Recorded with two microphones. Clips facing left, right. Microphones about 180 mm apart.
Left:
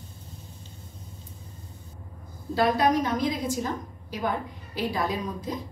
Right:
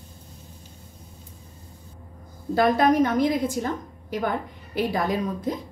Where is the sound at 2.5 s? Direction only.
50° right (ahead or behind).